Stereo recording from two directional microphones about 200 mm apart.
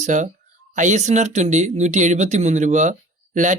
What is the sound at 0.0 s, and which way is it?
Speech, 40° right (ahead or behind).